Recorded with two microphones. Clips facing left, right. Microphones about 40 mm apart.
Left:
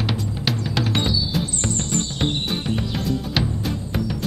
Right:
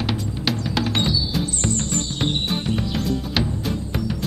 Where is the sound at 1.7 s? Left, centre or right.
Left.